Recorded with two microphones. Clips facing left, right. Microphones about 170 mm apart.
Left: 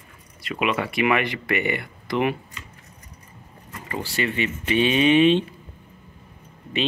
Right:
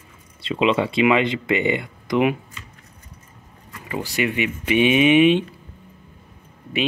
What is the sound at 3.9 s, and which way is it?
Speech, 15° right (ahead or behind).